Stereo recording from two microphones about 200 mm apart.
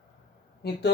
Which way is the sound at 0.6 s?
55° left (ahead or behind).